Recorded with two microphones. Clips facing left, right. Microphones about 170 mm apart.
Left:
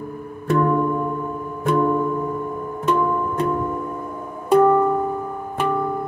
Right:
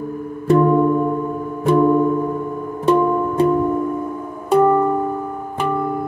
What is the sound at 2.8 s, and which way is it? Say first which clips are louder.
Music: right 5 dB; 35° right (ahead or behind).